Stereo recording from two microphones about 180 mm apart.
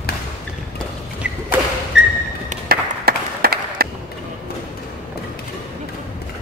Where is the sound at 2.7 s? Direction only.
60° right (ahead or behind).